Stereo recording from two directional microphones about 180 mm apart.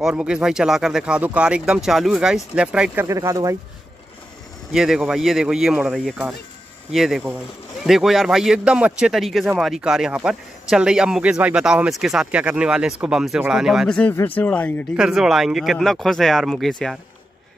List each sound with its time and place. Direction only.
0.0 s speech: 5° right (ahead or behind)
3.1 s speech: 15° right (ahead or behind)
4.7 s speech: 5° right (ahead or behind)
15.0 s speech: 5° right (ahead or behind)